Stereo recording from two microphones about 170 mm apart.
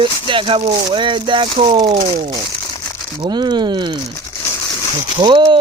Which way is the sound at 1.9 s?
45° right (ahead or behind).